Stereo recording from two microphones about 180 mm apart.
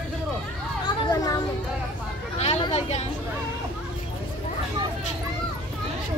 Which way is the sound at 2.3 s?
35° left (ahead or behind).